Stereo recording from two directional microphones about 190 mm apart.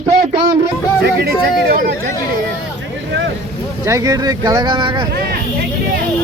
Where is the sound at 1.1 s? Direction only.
55° right (ahead or behind).